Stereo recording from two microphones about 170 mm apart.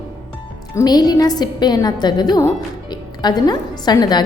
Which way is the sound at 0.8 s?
25° left (ahead or behind).